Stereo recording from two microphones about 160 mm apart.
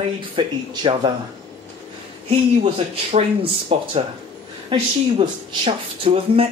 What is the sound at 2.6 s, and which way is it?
Speech, 40° right (ahead or behind).